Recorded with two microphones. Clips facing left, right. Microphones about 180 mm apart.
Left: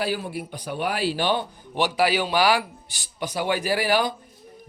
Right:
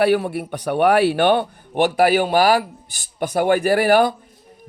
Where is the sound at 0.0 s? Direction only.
65° right (ahead or behind).